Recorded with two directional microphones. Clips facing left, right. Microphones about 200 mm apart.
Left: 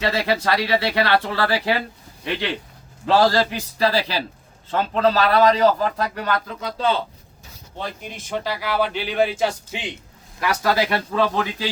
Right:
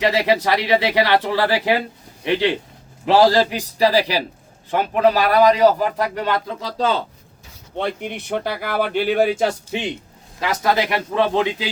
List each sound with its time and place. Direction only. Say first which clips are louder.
0.0 s a man's voice: right 4 dB; 20° right (ahead or behind)
3.1 s a man's voice: right 3 dB; 15° right (ahead or behind); by 6.9 s 35° right (ahead or behind)
7.8 s speech: right 7 dB; 65° right (ahead or behind); by 9.5 s 50° right (ahead or behind)
10.4 s speech: right 1 dB; 20° right (ahead or behind)